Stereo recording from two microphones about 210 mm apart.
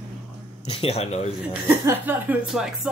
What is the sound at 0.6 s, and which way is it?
Speech, 25° left (ahead or behind).